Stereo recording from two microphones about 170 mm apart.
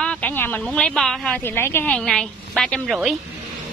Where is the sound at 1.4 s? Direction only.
15° left (ahead or behind).